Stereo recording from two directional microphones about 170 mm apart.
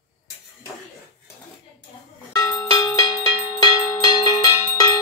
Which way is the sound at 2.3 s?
20° left (ahead or behind).